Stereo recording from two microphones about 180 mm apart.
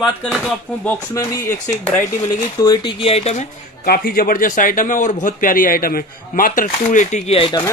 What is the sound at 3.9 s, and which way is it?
A man's voice, 55° left (ahead or behind).